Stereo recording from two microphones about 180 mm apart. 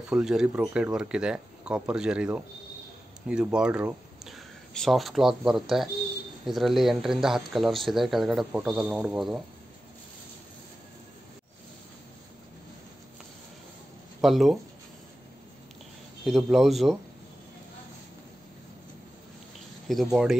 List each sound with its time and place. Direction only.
0.1 s speech: 5° right (ahead or behind)
14.2 s speech: centre (ahead or behind)
16.3 s speech: centre (ahead or behind)
19.9 s speech: centre (ahead or behind)